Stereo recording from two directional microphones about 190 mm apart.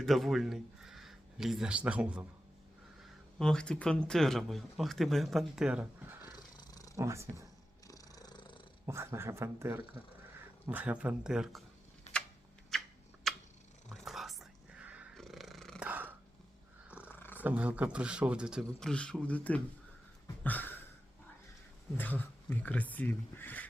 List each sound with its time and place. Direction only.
0.0 s speech: centre (ahead or behind)
3.3 s speech: 5° left (ahead or behind)
6.6 s roaring cats: 20° left (ahead or behind)
6.9 s speech: 15° right (ahead or behind)
7.9 s purr: 20° left (ahead or behind)
8.9 s speech: 15° right (ahead or behind)
12.1 s a sound: 35° left (ahead or behind)
12.7 s a sound: centre (ahead or behind)
15.9 s dog: 10° right (ahead or behind)
17.0 s purr: 10° left (ahead or behind)
17.3 s speech: 10° right (ahead or behind)
20.4 s a sound: 10° left (ahead or behind)
21.9 s speech: 10° left (ahead or behind)